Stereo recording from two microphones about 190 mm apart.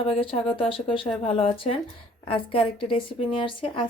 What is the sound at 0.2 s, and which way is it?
A woman's voice, 30° left (ahead or behind).